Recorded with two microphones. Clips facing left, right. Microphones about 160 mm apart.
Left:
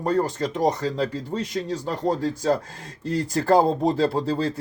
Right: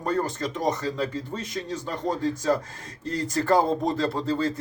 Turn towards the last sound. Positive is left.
turn(degrees=30)  # may be behind; listen again after turning